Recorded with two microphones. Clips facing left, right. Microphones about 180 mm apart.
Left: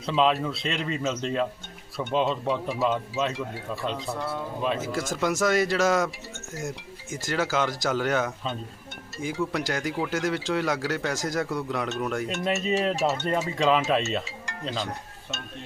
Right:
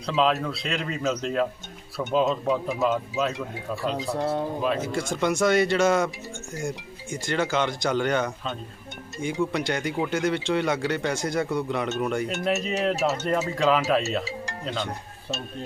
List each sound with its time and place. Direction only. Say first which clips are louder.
0.0 s speech: even; centre (ahead or behind)
4.6 s speech: right 2 dB; centre (ahead or behind)